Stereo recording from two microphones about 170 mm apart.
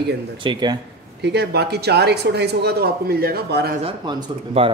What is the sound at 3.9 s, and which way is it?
Speech, 25° right (ahead or behind).